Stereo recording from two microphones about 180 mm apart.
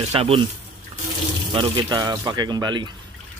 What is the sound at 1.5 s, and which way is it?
Speech, 25° right (ahead or behind).